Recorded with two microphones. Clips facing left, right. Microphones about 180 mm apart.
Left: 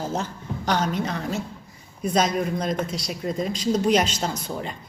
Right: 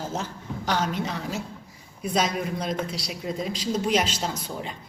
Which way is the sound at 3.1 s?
Centre (ahead or behind).